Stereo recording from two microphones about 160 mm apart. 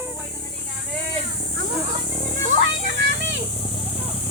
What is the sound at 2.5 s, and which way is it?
Music, 90° right.